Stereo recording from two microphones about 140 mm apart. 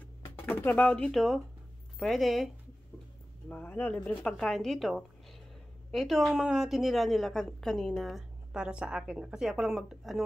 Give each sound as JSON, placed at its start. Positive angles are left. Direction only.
{"t": 0.6, "sound": "a woman's voice", "side_deg": 15}
{"t": 3.4, "sound": "a woman's voice", "side_deg": 10}